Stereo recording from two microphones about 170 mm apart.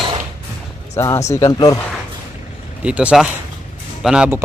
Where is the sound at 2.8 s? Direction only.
5° right (ahead or behind).